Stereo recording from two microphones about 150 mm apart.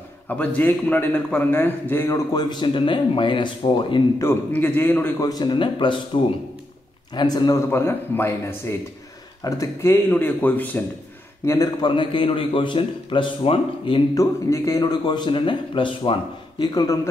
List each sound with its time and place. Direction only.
0.3 s a man's voice: 10° left (ahead or behind); by 4.0 s 30° left (ahead or behind)
4.2 s a man's voice: 15° left (ahead or behind)
5.2 s a man's voice: 30° left (ahead or behind); by 10.8 s 10° left (ahead or behind)
11.4 s a man's voice: 25° left (ahead or behind)
14.1 s a man's voice: 20° left (ahead or behind)